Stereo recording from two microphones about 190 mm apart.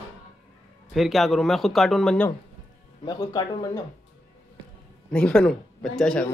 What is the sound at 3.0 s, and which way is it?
Speech, 20° left (ahead or behind).